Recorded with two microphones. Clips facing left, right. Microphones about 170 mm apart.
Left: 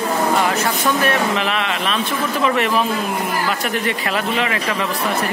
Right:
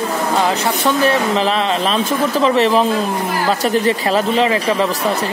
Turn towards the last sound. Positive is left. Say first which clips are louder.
# right 6 dB
turn(degrees=-30)  # may be behind; listen again after turning